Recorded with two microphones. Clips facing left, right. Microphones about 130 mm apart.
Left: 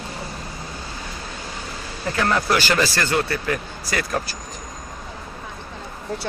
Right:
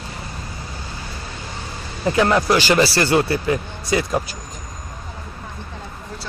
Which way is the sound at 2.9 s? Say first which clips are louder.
Right 5 dB; 30° right (ahead or behind).